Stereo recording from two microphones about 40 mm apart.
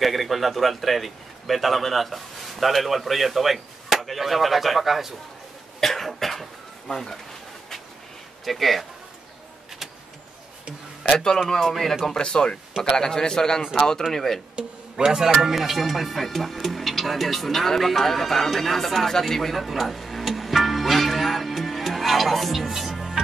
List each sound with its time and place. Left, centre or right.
0.0 s a man's voice: centre
5.8 s cough: centre
6.9 s a man's voice: centre
8.5 s a man's voice: centre
11.1 s a man's voice: centre
12.1 s a man's voice: centre
14.1 s a man's voice: centre
14.5 s speech: right; by 23.1 s centre